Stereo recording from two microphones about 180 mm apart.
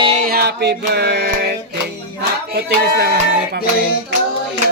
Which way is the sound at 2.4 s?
60° right (ahead or behind).